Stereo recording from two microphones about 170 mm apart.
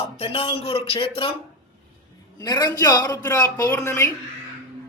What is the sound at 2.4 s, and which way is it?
A man's voice, 25° left (ahead or behind).